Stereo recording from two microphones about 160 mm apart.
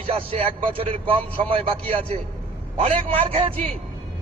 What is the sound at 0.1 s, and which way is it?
A man's voice, 35° right (ahead or behind).